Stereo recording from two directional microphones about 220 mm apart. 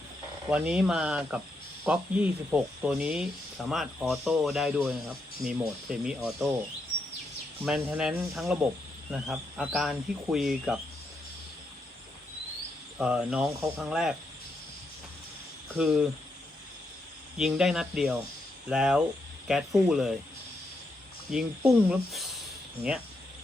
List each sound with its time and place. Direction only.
0.5 s speech: 5° right (ahead or behind)
7.6 s speech: 5° right (ahead or behind)
13.0 s speech: 5° right (ahead or behind)
15.8 s speech: centre (ahead or behind)
17.3 s speech: centre (ahead or behind)
21.2 s speech: centre (ahead or behind)